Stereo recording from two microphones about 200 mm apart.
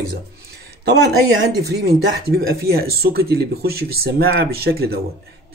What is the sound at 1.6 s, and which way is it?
Speech, 55° right (ahead or behind).